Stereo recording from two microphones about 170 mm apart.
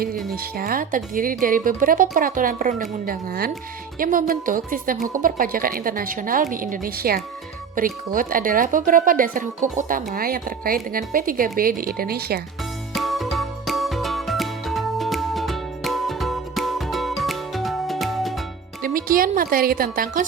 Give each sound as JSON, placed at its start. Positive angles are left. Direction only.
{"t": 0.5, "sound": "speech", "side_deg": -60}
{"t": 12.9, "sound": "music", "side_deg": 0}
{"t": 18.8, "sound": "a woman's voice", "side_deg": -55}